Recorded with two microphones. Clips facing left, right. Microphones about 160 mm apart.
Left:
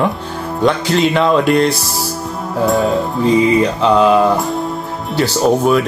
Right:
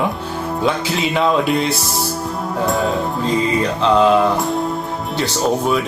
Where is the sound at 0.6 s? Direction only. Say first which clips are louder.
Left 6 dB; 5° right (ahead or behind).